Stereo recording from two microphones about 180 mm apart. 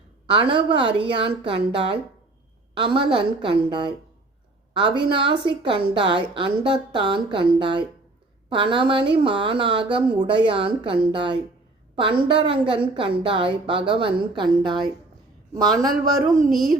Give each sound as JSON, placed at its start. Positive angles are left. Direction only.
{"t": 0.3, "sound": "a woman's voice", "side_deg": -30}